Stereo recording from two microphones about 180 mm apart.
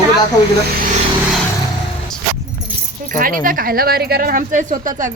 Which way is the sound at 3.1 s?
50° right (ahead or behind).